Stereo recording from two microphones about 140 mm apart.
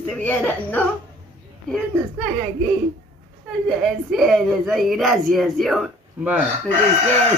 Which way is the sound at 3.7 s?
Centre (ahead or behind).